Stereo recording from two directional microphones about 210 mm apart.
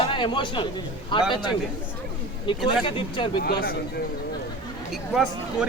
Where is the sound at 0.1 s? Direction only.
25° left (ahead or behind).